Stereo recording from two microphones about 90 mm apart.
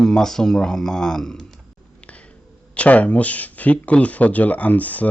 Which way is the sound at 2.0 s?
15° left (ahead or behind).